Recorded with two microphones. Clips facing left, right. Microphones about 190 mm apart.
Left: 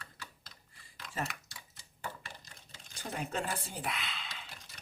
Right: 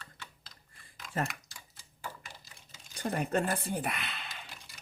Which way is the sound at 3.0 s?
60° right (ahead or behind).